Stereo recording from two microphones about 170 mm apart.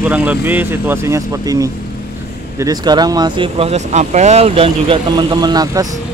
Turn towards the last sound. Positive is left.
turn(degrees=-25)  # may be behind; listen again after turning